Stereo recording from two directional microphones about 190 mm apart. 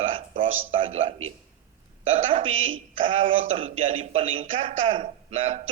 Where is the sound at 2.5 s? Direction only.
90° right.